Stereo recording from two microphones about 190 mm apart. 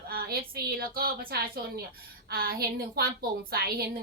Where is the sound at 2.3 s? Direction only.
50° right (ahead or behind).